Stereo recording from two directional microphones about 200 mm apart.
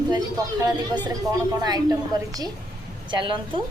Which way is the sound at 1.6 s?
20° right (ahead or behind).